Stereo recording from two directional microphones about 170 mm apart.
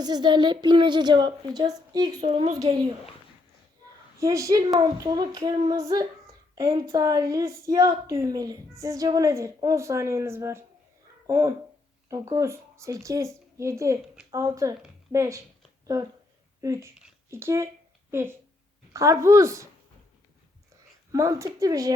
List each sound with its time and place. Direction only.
0.0 s a woman's voice: 25° right (ahead or behind)
2.2 s a woman's voice: 30° right (ahead or behind)
4.2 s a woman's voice: 20° right (ahead or behind)
16.6 s a woman's voice: 15° right (ahead or behind)
21.1 s a woman's voice: 20° right (ahead or behind)